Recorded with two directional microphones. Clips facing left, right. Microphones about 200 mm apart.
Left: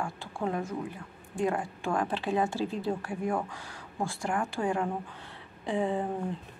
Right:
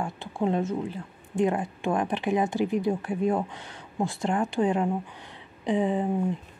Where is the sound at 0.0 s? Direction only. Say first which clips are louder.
Right 5 dB; 20° right (ahead or behind).